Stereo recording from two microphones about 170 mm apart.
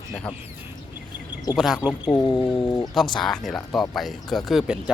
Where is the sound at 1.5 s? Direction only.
Centre (ahead or behind).